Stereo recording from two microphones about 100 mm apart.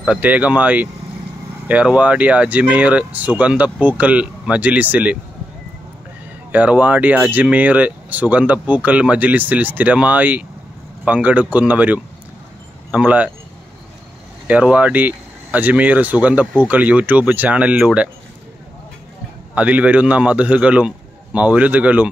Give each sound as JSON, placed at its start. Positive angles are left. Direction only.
{"t": 0.0, "sound": "speech", "side_deg": -15}
{"t": 6.5, "sound": "speech", "side_deg": -15}
{"t": 14.5, "sound": "speech", "side_deg": -15}
{"t": 19.5, "sound": "speech", "side_deg": -15}